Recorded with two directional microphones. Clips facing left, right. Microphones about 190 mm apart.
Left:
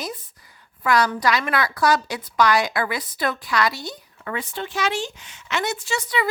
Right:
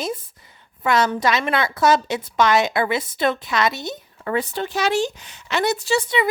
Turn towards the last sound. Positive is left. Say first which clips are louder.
# right 5 dB
turn(degrees=-25)  # may be behind; listen again after turning